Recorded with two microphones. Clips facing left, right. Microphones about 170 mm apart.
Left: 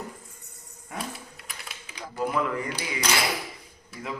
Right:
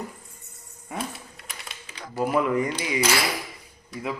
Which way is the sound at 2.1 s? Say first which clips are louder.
Right 5 dB; 20° right (ahead or behind).